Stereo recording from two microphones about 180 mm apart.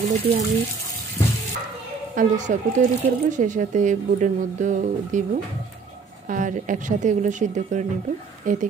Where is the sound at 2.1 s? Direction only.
45° right (ahead or behind).